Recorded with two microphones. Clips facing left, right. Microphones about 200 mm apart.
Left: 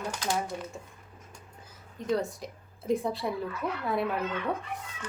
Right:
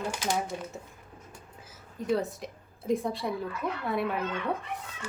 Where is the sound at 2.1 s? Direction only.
Centre (ahead or behind).